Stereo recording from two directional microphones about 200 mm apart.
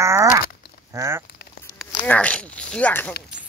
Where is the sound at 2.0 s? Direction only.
5° left (ahead or behind).